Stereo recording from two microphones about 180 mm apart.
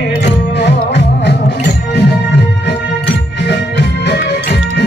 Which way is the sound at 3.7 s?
70° left (ahead or behind).